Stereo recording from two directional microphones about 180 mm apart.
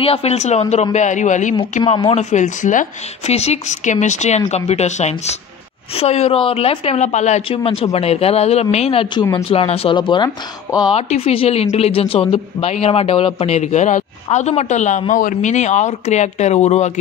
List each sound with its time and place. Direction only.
0.0 s a man's voice: 35° left (ahead or behind)
10.9 s speech: 35° left (ahead or behind)